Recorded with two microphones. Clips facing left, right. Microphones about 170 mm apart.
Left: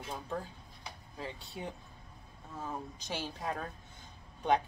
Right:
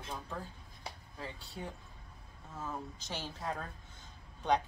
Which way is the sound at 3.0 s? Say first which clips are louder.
Left 3 dB; 15° left (ahead or behind).